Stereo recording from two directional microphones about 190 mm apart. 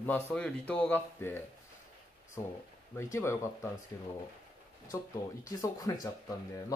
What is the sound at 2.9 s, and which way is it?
Speech, 15° left (ahead or behind).